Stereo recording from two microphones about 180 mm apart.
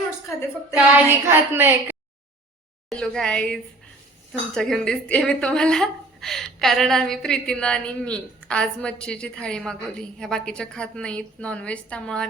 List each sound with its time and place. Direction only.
0.7 s a woman's voice: 10° right (ahead or behind)
2.9 s a woman's voice: 5° left (ahead or behind)